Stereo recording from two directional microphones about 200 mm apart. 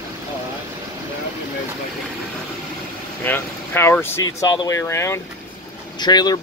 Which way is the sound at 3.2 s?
10° left (ahead or behind).